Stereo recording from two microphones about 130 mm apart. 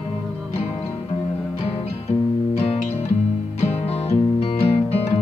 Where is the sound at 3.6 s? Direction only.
50° left (ahead or behind).